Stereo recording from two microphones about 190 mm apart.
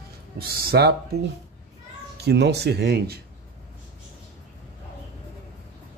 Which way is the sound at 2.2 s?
60° right (ahead or behind).